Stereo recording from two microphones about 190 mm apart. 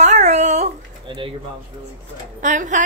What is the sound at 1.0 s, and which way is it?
Speech, 25° right (ahead or behind).